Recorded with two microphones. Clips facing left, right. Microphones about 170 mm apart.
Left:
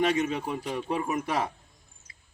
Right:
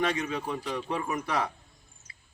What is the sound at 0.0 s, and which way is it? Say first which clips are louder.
A man's voice: left 3 dB; 20° left (ahead or behind).